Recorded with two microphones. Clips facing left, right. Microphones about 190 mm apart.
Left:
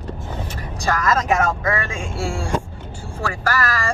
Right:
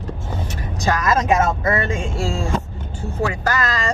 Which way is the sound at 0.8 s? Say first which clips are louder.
Right 1 dB; 20° right (ahead or behind).